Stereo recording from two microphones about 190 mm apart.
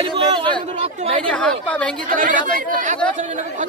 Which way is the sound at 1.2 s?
5° left (ahead or behind).